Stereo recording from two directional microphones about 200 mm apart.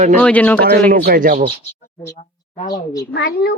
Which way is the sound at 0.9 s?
45° right (ahead or behind).